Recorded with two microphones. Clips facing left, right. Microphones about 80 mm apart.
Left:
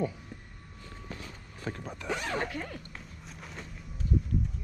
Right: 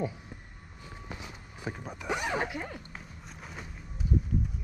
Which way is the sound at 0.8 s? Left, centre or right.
Centre.